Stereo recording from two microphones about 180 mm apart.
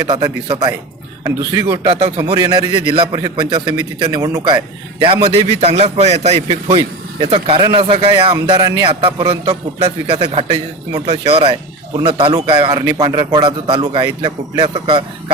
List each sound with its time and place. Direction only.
0.1 s a man's voice: 25° right (ahead or behind)
1.7 s a man's voice: 30° right (ahead or behind)